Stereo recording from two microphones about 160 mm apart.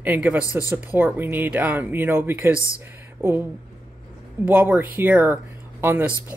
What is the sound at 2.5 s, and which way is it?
Speech, 20° left (ahead or behind).